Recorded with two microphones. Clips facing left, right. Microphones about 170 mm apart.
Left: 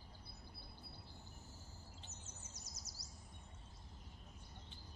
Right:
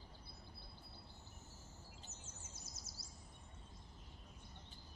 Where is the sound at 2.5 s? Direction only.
25° right (ahead or behind).